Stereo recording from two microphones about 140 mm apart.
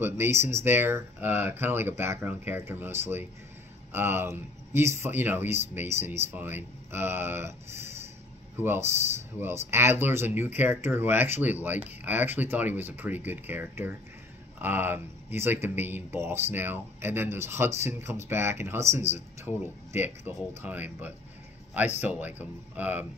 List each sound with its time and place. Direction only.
0.0 s speech: 20° right (ahead or behind)